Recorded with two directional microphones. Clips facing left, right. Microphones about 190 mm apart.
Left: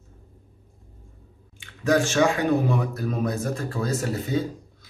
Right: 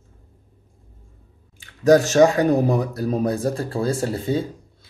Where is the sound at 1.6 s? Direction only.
40° right (ahead or behind).